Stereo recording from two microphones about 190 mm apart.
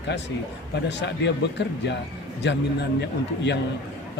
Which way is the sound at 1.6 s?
65° left (ahead or behind).